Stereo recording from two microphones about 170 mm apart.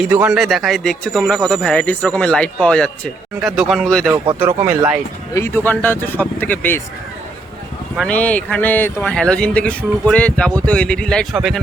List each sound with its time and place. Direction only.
0.0 s speech: 5° right (ahead or behind)
4.1 s speech: 15° right (ahead or behind)
5.3 s speech: 15° left (ahead or behind)
7.9 s speech: 5° left (ahead or behind)